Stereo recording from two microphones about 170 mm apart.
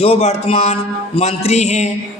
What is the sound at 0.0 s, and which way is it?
A man's voice, 35° left (ahead or behind).